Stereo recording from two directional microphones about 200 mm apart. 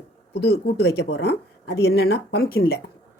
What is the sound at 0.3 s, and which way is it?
Speech, 55° left (ahead or behind).